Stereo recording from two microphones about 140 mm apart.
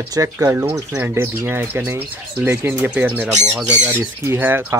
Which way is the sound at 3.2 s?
55° right (ahead or behind).